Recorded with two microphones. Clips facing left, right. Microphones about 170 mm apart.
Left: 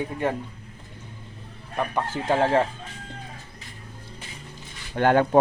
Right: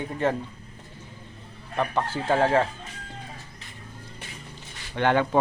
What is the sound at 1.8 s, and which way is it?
Speech, 15° left (ahead or behind).